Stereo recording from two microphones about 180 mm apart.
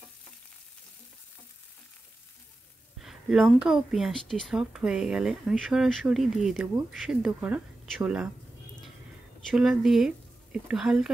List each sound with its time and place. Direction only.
3.0 s speech: centre (ahead or behind)
9.5 s speech: centre (ahead or behind)